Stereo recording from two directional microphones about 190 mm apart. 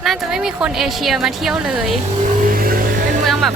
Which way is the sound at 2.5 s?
50° right (ahead or behind).